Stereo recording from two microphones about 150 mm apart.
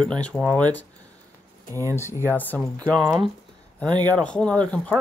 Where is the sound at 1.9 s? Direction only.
15° left (ahead or behind).